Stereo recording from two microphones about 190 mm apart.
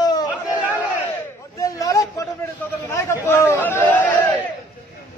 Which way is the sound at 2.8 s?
15° left (ahead or behind).